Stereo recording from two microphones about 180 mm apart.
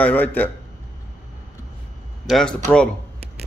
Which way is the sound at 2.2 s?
Centre (ahead or behind).